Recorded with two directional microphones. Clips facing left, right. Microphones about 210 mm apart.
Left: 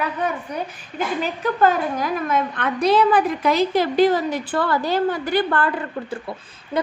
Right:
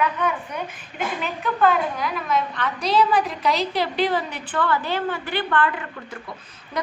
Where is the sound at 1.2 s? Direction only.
40° left (ahead or behind).